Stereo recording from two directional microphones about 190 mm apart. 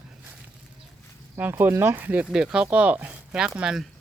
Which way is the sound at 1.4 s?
10° right (ahead or behind).